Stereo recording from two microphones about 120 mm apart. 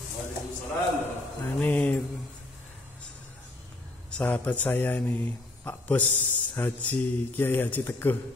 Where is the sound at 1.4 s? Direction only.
15° left (ahead or behind).